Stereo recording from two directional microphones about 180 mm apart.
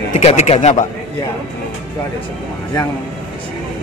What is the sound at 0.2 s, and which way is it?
Speech, 35° left (ahead or behind).